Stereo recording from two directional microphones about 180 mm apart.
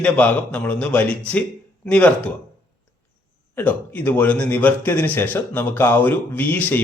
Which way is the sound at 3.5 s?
10° left (ahead or behind).